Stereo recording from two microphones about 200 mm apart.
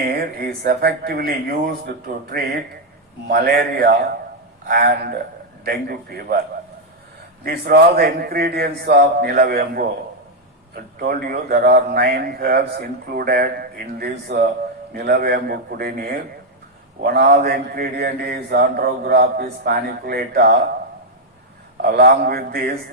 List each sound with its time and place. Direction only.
0.6 s speech: 50° right (ahead or behind)
3.2 s speech: 45° right (ahead or behind)
7.4 s speech: 50° right (ahead or behind)
21.8 s speech: 50° right (ahead or behind)